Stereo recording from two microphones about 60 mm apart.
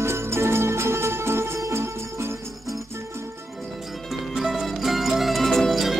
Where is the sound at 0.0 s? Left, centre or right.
Right.